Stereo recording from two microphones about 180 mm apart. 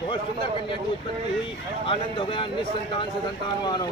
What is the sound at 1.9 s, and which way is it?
Speech, 30° left (ahead or behind).